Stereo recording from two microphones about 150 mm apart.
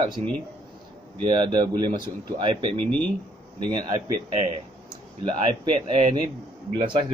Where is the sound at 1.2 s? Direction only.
35° right (ahead or behind).